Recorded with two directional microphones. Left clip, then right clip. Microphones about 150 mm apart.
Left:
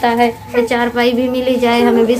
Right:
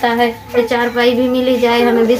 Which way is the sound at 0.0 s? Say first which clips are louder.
Left 1 dB; 40° left (ahead or behind).